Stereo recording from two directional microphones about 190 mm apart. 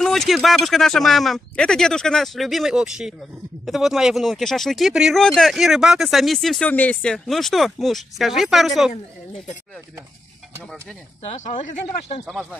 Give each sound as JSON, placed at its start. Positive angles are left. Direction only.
{"t": 0.0, "sound": "speech", "side_deg": 0}
{"t": 11.2, "sound": "speech", "side_deg": 40}